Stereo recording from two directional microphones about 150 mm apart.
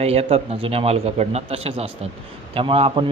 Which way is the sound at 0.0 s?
45° right (ahead or behind).